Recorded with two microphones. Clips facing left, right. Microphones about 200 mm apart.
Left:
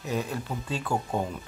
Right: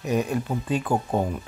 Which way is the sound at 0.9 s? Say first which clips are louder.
Right 3 dB; 35° right (ahead or behind).